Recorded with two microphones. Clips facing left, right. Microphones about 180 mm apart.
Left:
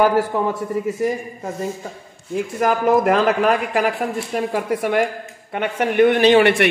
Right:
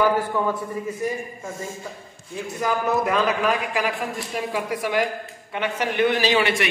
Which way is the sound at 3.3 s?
55° left (ahead or behind).